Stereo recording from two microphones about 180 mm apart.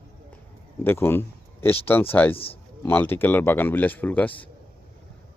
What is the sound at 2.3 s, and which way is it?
Speech, 30° left (ahead or behind).